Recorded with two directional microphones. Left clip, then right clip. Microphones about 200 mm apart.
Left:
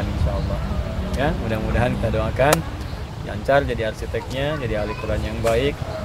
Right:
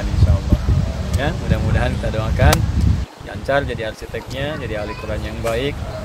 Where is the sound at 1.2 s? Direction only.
5° left (ahead or behind).